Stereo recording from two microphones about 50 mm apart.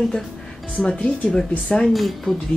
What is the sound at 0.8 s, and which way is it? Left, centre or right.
Speech, centre.